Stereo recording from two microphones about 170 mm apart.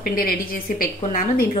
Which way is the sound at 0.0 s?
60° left (ahead or behind).